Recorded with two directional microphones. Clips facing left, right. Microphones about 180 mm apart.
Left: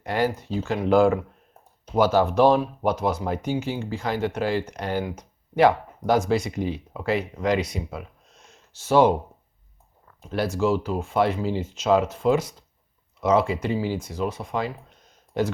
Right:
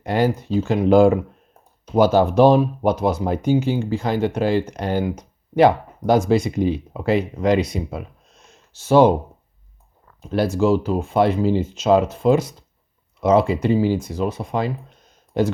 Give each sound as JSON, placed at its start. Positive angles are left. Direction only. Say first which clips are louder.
{"t": 0.0, "sound": "speech", "louder": "right 5 dB", "side_deg": -25}
{"t": 10.3, "sound": "speech", "louder": "right 5 dB", "side_deg": -30}